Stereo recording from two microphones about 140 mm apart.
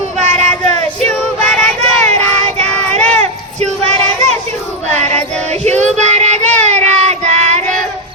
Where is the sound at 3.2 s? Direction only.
55° right (ahead or behind).